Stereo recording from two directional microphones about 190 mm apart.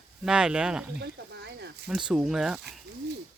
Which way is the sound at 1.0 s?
60° right (ahead or behind).